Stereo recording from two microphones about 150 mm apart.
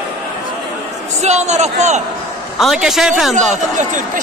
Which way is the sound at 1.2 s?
50° right (ahead or behind).